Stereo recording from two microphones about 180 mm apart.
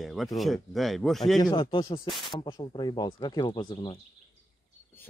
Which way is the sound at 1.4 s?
25° left (ahead or behind).